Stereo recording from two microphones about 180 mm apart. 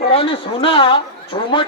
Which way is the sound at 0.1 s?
30° left (ahead or behind).